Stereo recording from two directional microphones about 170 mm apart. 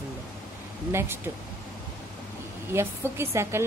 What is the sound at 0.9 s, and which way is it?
Speech, 15° right (ahead or behind).